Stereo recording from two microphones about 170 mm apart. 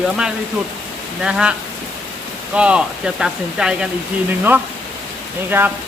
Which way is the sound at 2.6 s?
5° right (ahead or behind).